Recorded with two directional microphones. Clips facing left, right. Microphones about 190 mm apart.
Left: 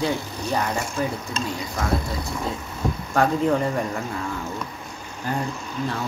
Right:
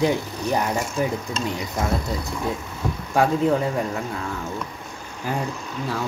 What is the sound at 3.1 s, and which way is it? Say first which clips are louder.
Speech: right 1 dB; 5° right (ahead or behind).